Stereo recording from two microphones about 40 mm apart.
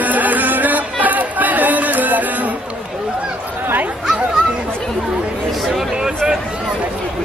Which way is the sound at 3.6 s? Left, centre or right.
Right.